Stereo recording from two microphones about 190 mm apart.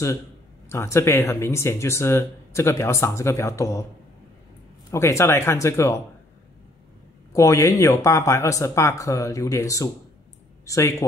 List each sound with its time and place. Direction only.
0.7 s speech: 15° left (ahead or behind)
4.9 s speech: 15° left (ahead or behind)
7.3 s speech: 15° left (ahead or behind)